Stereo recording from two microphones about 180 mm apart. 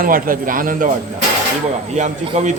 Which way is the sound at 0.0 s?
50° right (ahead or behind).